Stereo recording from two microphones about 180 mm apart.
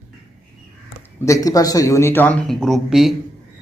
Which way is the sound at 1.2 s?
20° left (ahead or behind).